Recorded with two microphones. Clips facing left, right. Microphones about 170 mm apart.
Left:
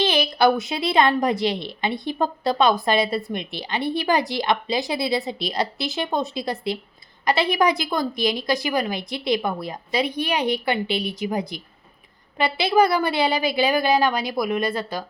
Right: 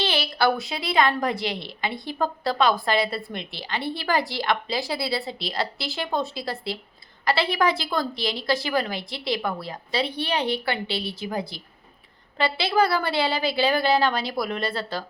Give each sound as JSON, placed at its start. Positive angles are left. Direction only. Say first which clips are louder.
{"t": 0.0, "sound": "a woman's voice", "louder": "left 4 dB", "side_deg": 20}